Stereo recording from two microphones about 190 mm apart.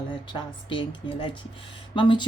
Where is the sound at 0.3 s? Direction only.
25° left (ahead or behind).